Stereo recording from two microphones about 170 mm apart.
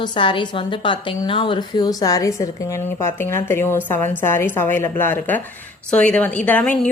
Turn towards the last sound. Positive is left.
turn(degrees=10)  # may be behind; listen again after turning